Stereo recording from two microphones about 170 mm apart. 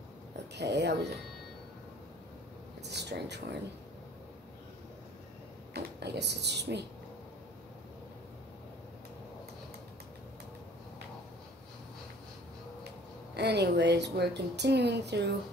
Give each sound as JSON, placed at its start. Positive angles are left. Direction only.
{"t": 0.6, "sound": "speech", "side_deg": -80}
{"t": 2.8, "sound": "speech", "side_deg": -85}
{"t": 5.7, "sound": "speech", "side_deg": -75}
{"t": 13.4, "sound": "speech", "side_deg": -80}